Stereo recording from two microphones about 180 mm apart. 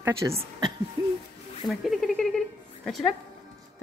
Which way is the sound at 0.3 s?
35° right (ahead or behind).